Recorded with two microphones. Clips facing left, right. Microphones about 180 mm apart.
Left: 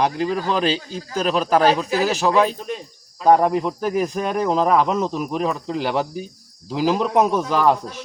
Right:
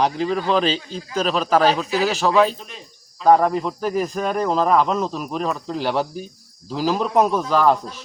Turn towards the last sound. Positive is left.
turn(degrees=15)  # may be behind; listen again after turning